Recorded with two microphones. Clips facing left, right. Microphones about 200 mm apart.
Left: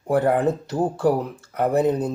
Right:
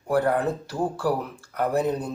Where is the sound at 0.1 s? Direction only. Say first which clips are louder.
Left 3 dB; 20° left (ahead or behind).